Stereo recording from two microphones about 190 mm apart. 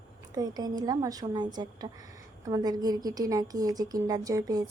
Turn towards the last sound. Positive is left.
turn(degrees=-20)  # may be behind; listen again after turning